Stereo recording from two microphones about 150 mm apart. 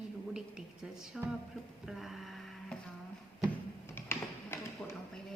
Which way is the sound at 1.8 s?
Centre (ahead or behind).